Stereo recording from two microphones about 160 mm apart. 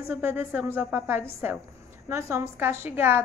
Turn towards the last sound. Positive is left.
turn(degrees=-15)  # may be behind; listen again after turning